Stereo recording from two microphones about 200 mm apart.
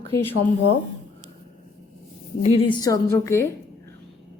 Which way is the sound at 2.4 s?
25° left (ahead or behind).